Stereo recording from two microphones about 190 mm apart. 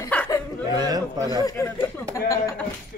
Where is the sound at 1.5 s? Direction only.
15° left (ahead or behind).